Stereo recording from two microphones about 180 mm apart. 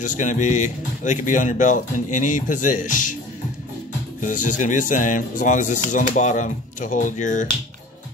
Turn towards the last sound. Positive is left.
turn(degrees=45)  # may be behind; listen again after turning